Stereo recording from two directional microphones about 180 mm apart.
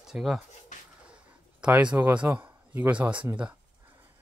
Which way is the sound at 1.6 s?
5° right (ahead or behind).